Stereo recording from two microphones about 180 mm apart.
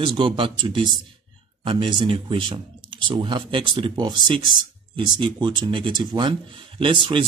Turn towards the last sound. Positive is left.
turn(degrees=-30)  # may be behind; listen again after turning